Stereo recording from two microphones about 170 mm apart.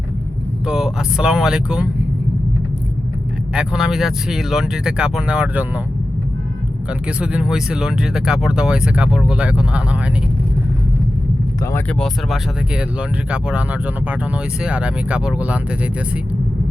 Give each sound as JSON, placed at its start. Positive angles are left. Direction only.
{"t": 0.7, "sound": "speech", "side_deg": 0}
{"t": 3.5, "sound": "speech", "side_deg": -5}
{"t": 7.2, "sound": "speech", "side_deg": -5}
{"t": 11.6, "sound": "speech", "side_deg": 15}
{"t": 11.9, "sound": "speech", "side_deg": 0}